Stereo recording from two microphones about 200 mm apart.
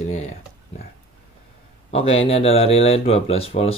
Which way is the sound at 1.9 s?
30° left (ahead or behind).